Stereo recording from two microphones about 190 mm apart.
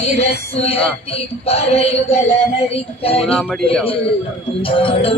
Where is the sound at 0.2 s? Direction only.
30° left (ahead or behind).